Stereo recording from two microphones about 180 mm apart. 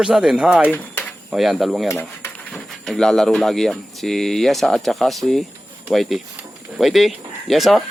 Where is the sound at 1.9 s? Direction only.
15° left (ahead or behind).